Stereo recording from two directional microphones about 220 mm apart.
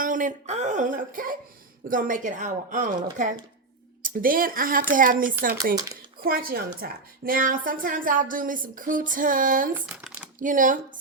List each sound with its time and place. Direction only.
0.0 s a woman's voice: 35° right (ahead or behind)
9.7 s speech: 5° right (ahead or behind)
10.4 s a woman's voice: 35° right (ahead or behind)